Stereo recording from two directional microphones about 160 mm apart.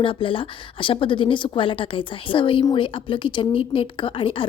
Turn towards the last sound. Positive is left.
turn(degrees=35)  # may be behind; listen again after turning